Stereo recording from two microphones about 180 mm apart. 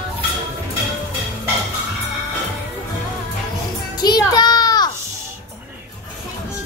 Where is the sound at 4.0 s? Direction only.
20° left (ahead or behind).